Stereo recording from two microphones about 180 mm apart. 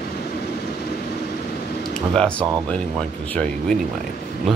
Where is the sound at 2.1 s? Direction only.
5° left (ahead or behind).